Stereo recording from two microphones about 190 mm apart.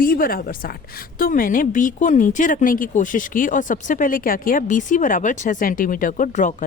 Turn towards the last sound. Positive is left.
turn(degrees=40)  # may be behind; listen again after turning